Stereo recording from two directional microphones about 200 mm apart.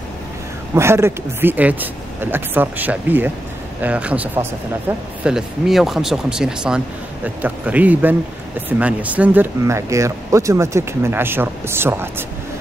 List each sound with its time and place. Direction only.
0.7 s speech: 10° right (ahead or behind)